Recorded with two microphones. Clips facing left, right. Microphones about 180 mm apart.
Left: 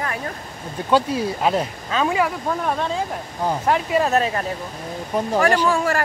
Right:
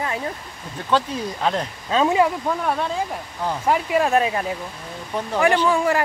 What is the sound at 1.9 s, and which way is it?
Speech, 25° right (ahead or behind).